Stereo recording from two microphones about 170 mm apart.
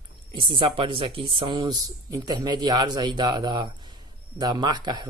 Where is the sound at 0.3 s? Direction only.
30° right (ahead or behind).